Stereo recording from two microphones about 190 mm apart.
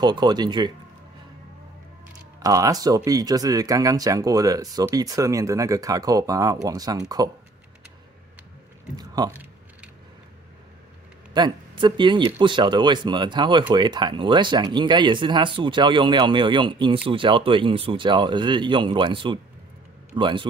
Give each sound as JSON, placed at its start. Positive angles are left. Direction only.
{"t": 0.0, "sound": "speech", "side_deg": -20}
{"t": 2.4, "sound": "speech", "side_deg": -15}
{"t": 8.9, "sound": "a sound", "side_deg": -20}
{"t": 11.3, "sound": "speech", "side_deg": -25}